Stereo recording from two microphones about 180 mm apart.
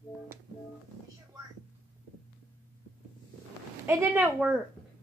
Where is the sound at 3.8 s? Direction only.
10° right (ahead or behind).